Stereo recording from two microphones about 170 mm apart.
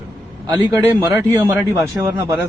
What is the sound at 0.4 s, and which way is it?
A man's voice, 20° right (ahead or behind).